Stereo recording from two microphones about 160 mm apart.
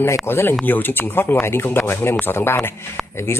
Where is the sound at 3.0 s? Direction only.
Centre (ahead or behind).